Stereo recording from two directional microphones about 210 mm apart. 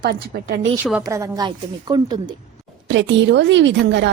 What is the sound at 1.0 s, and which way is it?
Speech, 15° right (ahead or behind).